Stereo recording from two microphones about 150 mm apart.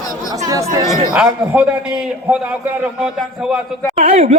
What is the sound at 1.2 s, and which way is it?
A man's voice, 10° right (ahead or behind).